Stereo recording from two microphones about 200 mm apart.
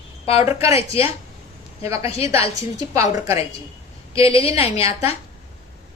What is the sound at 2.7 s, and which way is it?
Speech, 15° right (ahead or behind).